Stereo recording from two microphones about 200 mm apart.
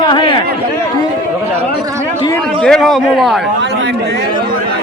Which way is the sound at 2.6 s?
Centre (ahead or behind).